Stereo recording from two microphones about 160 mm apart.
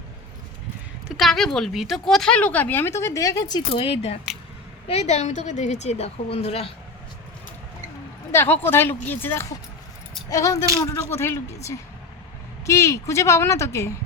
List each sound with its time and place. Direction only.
1.0 s a woman's voice: centre (ahead or behind); by 6.7 s 40° left (ahead or behind)
8.3 s speech: 15° left (ahead or behind)
12.6 s speech: 20° left (ahead or behind)